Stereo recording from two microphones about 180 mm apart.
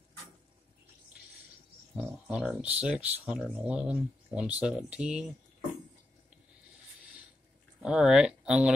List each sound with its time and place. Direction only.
2.0 s speech: 5° right (ahead or behind)
7.8 s speech: 5° right (ahead or behind)